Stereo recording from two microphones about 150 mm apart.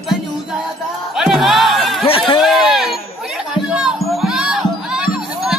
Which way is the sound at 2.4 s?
Centre (ahead or behind).